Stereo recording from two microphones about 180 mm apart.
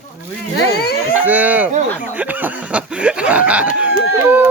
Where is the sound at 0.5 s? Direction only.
60° left (ahead or behind).